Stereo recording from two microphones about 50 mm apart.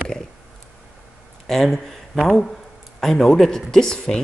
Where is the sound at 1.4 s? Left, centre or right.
Centre.